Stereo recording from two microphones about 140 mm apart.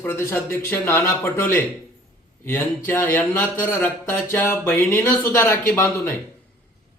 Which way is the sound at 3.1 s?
10° left (ahead or behind).